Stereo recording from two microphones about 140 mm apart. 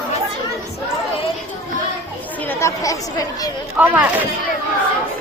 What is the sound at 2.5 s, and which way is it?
Chatter, 20° left (ahead or behind).